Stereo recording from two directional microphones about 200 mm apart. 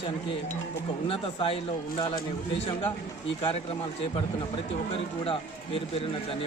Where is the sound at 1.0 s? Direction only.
25° left (ahead or behind).